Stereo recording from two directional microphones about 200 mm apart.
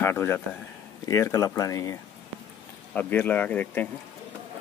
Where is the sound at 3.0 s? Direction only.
10° left (ahead or behind).